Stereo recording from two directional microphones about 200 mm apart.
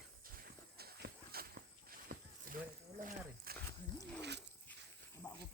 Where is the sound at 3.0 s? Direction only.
45° right (ahead or behind).